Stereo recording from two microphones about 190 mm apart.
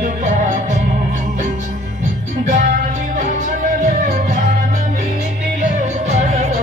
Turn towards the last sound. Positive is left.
turn(degrees=-35)  # may be behind; listen again after turning